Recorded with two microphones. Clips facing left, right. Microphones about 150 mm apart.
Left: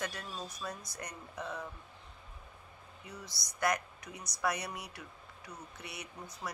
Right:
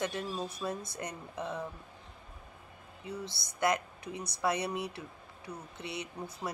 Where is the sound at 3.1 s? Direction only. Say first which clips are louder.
Right 8 dB; 25° right (ahead or behind).